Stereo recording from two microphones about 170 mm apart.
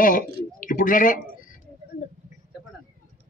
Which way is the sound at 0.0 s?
50° left (ahead or behind).